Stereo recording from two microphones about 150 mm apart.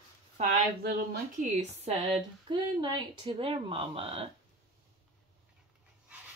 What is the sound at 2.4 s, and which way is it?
Speech, 30° right (ahead or behind).